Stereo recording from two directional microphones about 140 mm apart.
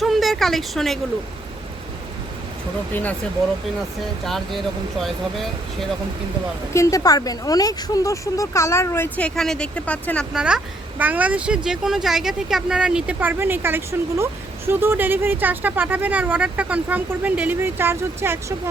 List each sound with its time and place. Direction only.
0.0 s speech: centre (ahead or behind)
2.9 s speech: 10° left (ahead or behind)
4.2 s speech: centre (ahead or behind)
6.7 s speech: 25° left (ahead or behind)
9.1 s speech: 5° left (ahead or behind)
10.3 s speech: 5° right (ahead or behind)